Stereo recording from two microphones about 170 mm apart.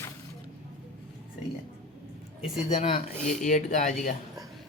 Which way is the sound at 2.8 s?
40° left (ahead or behind).